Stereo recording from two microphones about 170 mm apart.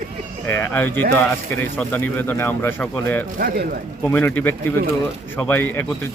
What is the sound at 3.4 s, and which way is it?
Speech, 60° right (ahead or behind).